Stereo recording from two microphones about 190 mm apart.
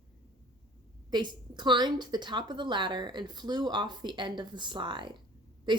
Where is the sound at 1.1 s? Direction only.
25° right (ahead or behind).